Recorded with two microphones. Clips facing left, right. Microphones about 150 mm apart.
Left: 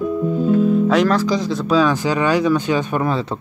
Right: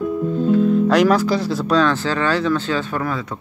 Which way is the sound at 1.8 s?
15° left (ahead or behind).